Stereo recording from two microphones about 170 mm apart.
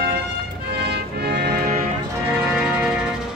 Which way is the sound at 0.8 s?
70° right (ahead or behind).